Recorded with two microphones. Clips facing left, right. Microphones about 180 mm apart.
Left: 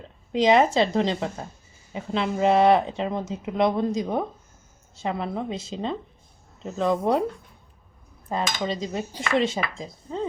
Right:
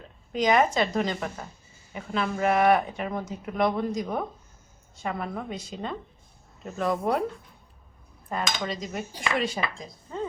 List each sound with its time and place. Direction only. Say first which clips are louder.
0.3 s speech: left 4 dB; 25° left (ahead or behind)
8.3 s speech: left 3 dB; 25° left (ahead or behind)